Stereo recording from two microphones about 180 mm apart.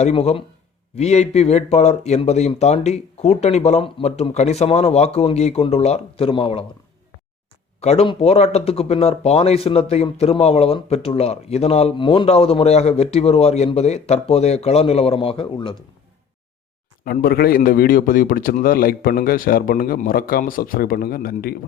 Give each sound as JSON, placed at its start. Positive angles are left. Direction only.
{"t": 0.0, "sound": "speech", "side_deg": 35}
{"t": 7.8, "sound": "speech", "side_deg": 35}
{"t": 17.1, "sound": "a man's voice", "side_deg": 55}